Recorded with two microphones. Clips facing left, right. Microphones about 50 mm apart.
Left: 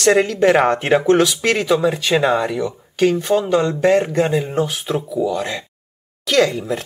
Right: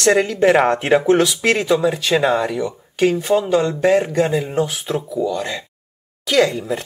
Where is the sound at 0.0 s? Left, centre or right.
Centre.